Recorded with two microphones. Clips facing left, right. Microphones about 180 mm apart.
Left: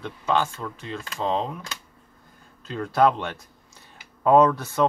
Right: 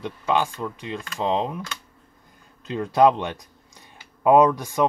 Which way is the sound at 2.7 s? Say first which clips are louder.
Right 3 dB; 15° right (ahead or behind).